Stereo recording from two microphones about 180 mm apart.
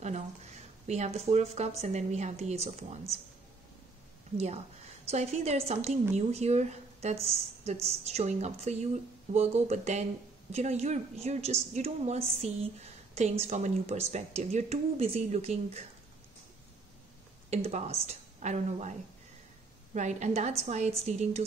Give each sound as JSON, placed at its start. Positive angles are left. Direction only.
{"t": 0.8, "sound": "a woman's voice", "side_deg": -40}
{"t": 5.0, "sound": "a woman's voice", "side_deg": -35}
{"t": 17.5, "sound": "a woman's voice", "side_deg": -40}